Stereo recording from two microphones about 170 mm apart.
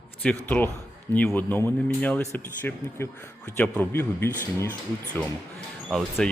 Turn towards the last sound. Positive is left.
turn(degrees=0)  # may be behind; listen again after turning